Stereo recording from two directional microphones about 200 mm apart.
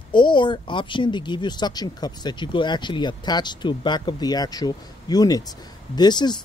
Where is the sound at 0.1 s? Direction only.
25° left (ahead or behind).